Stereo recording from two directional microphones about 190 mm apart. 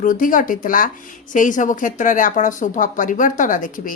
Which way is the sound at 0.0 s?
45° left (ahead or behind).